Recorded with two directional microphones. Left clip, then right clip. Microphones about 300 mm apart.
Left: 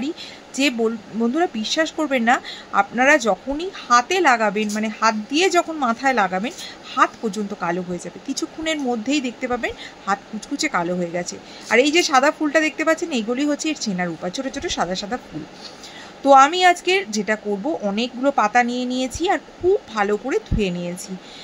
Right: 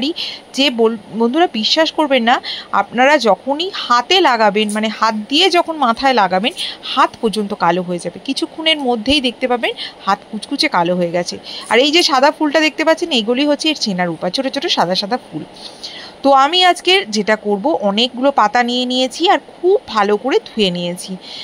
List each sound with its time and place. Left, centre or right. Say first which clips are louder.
0.0 s speech: right 9 dB; centre